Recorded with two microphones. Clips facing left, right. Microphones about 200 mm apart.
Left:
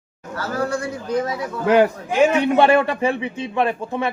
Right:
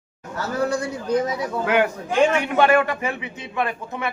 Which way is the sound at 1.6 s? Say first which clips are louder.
Left 6 dB; 35° left (ahead or behind).